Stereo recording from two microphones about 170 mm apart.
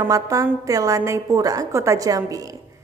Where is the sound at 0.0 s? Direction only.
20° right (ahead or behind).